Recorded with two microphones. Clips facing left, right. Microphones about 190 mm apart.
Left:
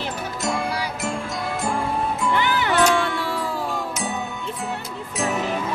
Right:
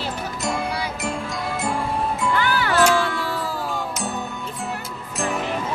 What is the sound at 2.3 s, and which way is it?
Music, 20° left (ahead or behind).